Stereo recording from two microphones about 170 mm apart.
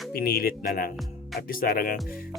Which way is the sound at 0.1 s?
65° left (ahead or behind).